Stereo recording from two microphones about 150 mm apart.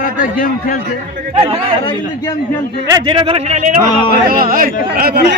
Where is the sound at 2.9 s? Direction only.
30° right (ahead or behind).